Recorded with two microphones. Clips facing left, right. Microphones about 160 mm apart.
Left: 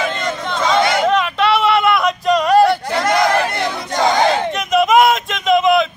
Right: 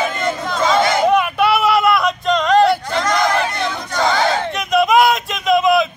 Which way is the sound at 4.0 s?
20° left (ahead or behind).